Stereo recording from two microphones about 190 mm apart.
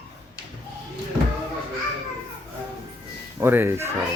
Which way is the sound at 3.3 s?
10° right (ahead or behind).